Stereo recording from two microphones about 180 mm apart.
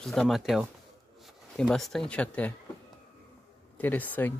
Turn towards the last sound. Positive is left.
turn(degrees=10)  # may be behind; listen again after turning